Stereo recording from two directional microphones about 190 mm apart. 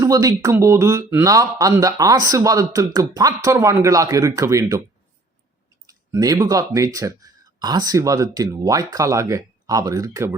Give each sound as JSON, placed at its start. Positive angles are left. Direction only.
{"t": 0.0, "sound": "speech", "side_deg": -20}
{"t": 5.8, "sound": "speech", "side_deg": -20}